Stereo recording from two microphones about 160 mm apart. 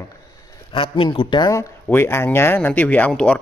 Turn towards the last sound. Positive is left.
turn(degrees=5)  # may be behind; listen again after turning